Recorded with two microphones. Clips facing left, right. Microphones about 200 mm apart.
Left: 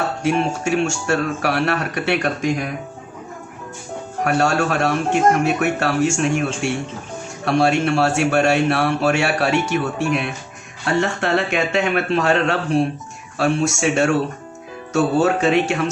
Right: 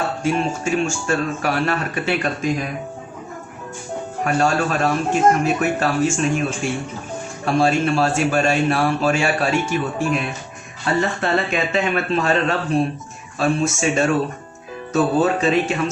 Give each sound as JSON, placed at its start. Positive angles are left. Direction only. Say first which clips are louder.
{"t": 0.2, "sound": "speech", "louder": "left 1 dB", "side_deg": 70}
{"t": 4.2, "sound": "speech", "louder": "left 1 dB", "side_deg": 65}